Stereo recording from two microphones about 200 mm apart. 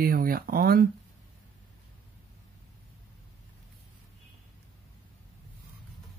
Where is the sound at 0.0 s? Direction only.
45° right (ahead or behind).